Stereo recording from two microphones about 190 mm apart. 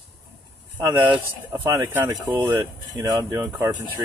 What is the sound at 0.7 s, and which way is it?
Speech, 20° right (ahead or behind).